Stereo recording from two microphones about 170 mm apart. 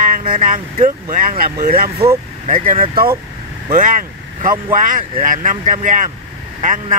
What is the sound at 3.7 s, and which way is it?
Speech, 50° right (ahead or behind).